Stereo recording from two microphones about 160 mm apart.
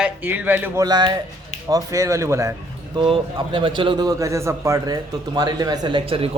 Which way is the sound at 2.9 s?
30° right (ahead or behind).